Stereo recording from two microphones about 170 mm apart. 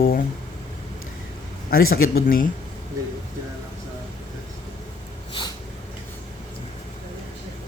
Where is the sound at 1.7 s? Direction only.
60° left (ahead or behind).